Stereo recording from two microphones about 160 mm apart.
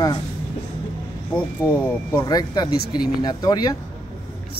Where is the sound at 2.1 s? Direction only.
25° left (ahead or behind).